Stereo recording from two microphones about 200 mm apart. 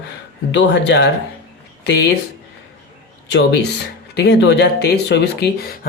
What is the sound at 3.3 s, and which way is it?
Speech, 60° left (ahead or behind).